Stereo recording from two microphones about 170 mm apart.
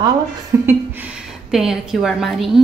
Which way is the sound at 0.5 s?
15° right (ahead or behind).